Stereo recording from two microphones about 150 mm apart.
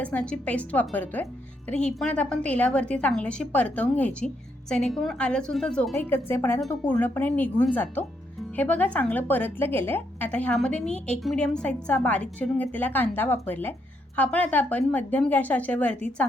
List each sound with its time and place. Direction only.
0.0 s a woman's voice: 10° left (ahead or behind)